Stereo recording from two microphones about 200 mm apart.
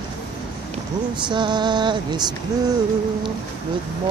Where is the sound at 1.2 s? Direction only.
20° right (ahead or behind).